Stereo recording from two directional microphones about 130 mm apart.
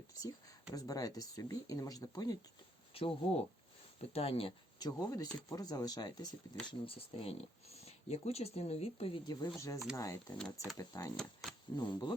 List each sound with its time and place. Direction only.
0.7 s speech: 30° left (ahead or behind)
2.9 s speech: 45° left (ahead or behind)
4.8 s speech: 30° left (ahead or behind)
6.7 s speech: 45° left (ahead or behind); by 11.1 s 25° left (ahead or behind)
11.4 s speech: centre (ahead or behind)
11.8 s speech: 35° left (ahead or behind)